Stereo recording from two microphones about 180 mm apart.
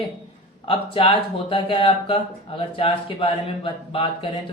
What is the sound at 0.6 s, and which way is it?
Speech, 30° left (ahead or behind).